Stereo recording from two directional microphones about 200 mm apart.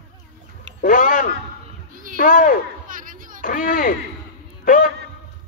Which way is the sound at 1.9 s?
40° right (ahead or behind).